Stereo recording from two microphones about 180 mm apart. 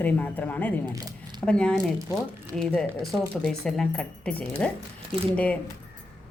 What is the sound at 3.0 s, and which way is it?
A woman's voice, centre (ahead or behind).